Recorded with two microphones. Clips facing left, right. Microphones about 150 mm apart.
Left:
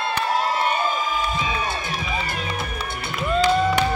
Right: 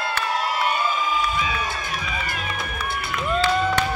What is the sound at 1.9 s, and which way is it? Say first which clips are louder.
Run: left 2 dB; 30° left (ahead or behind).